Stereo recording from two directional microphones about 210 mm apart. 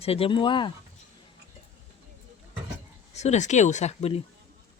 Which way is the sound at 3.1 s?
30° left (ahead or behind).